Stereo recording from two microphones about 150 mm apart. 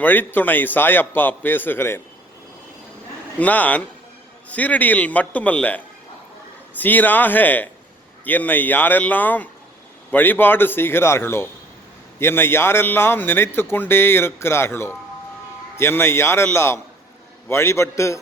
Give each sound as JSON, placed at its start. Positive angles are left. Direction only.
{"t": 0.0, "sound": "speech", "side_deg": 10}
{"t": 3.3, "sound": "speech", "side_deg": 10}